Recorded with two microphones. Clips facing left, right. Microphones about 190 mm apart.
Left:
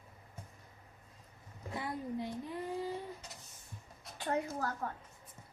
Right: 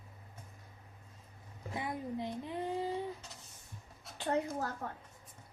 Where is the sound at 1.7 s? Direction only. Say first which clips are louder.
Even; 20° right (ahead or behind).